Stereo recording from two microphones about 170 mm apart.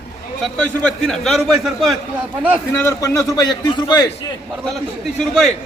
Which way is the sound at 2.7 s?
15° left (ahead or behind).